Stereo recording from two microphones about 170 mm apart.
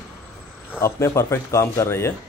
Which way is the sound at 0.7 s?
15° left (ahead or behind).